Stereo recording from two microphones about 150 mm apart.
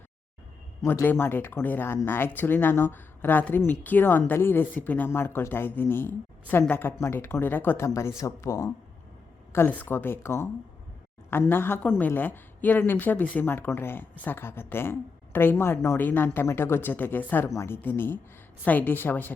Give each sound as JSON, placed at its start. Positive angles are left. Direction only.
{"t": 0.8, "sound": "a woman's voice", "side_deg": 15}